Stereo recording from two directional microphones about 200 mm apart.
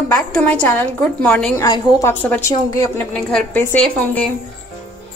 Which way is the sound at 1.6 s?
15° left (ahead or behind).